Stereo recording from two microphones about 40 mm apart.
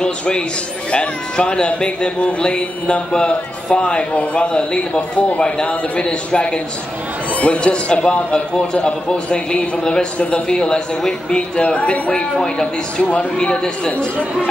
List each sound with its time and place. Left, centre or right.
0.9 s speech: left
12.4 s speech: centre
13.5 s speech: left